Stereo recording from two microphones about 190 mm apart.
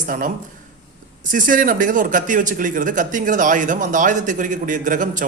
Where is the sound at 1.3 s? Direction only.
45° right (ahead or behind).